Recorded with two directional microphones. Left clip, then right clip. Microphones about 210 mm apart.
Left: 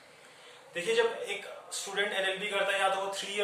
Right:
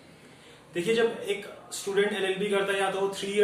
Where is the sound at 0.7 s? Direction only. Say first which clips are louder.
Right 3 dB; centre (ahead or behind).